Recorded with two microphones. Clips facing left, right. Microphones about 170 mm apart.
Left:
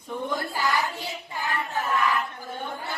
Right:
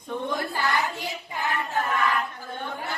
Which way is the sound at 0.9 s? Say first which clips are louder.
Right 1 dB; 20° right (ahead or behind).